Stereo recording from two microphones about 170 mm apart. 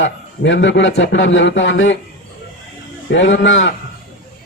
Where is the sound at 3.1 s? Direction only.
90° left.